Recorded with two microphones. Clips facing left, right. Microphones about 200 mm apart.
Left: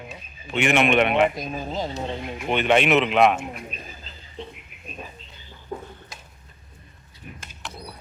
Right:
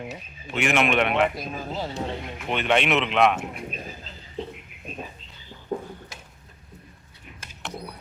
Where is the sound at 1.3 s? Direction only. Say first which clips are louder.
Left 2 dB; 20° left (ahead or behind).